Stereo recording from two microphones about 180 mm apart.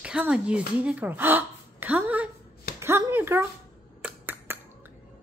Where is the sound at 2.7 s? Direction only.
15° right (ahead or behind).